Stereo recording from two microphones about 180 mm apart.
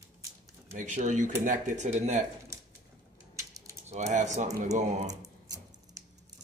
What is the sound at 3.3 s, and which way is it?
Mechanisms, 20° right (ahead or behind).